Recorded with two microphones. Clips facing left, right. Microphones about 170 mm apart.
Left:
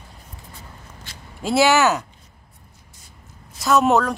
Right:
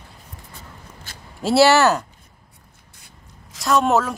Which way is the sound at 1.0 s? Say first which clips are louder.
Right 3 dB; 40° right (ahead or behind).